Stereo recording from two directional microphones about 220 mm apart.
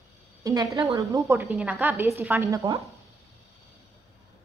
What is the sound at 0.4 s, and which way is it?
A woman's voice, 15° right (ahead or behind).